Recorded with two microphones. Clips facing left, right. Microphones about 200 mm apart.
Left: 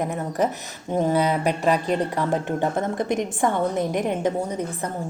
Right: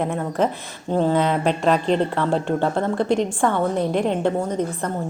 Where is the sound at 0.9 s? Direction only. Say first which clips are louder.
Right 2 dB; 15° left (ahead or behind).